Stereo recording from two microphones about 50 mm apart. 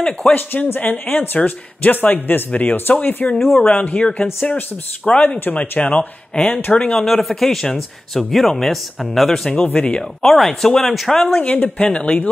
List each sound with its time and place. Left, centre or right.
0.3 s speech: left
3.3 s speech: centre
3.6 s speech: left
6.7 s speech: left
7.1 s speech: centre
9.7 s speech: left
10.2 s speech: centre
11.4 s speech: left